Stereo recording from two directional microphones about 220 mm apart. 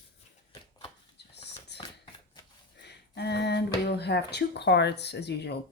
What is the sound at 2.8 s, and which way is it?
Speech, 50° left (ahead or behind).